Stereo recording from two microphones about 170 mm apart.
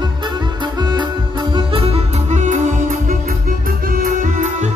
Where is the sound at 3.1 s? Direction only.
55° right (ahead or behind).